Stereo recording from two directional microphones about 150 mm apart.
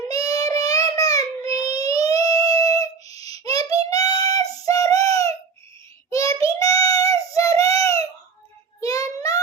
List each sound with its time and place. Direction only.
0.1 s child singing: 25° left (ahead or behind)